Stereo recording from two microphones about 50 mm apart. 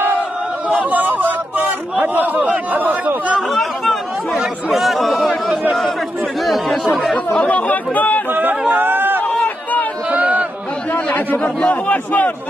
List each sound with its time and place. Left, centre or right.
0.7 s a sound: right
3.3 s chatter: centre
6.4 s chatter: centre
7.4 s chatter: left
8.3 s a sound: right
10.1 s chatter: right
11.1 s a man's voice: left